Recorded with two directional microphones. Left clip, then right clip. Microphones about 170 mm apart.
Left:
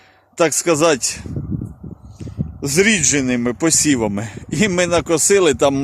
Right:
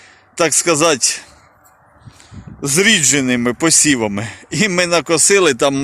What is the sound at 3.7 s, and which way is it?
Speech, 10° left (ahead or behind).